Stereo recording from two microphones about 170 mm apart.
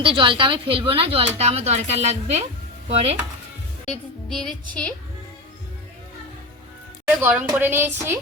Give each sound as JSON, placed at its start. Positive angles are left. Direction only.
{"t": 0.0, "sound": "speech", "side_deg": -30}
{"t": 3.8, "sound": "music", "side_deg": 0}
{"t": 4.7, "sound": "a woman's voice", "side_deg": 5}
{"t": 7.2, "sound": "a woman's voice", "side_deg": -10}